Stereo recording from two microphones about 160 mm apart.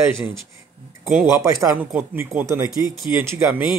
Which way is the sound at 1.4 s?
20° right (ahead or behind).